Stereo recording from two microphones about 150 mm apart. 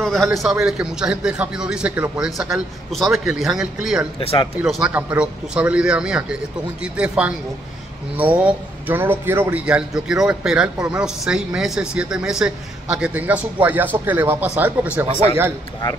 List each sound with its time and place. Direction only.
0.0 s a man's voice: centre (ahead or behind)
4.2 s speech: 40° left (ahead or behind)
4.6 s a man's voice: 5° right (ahead or behind)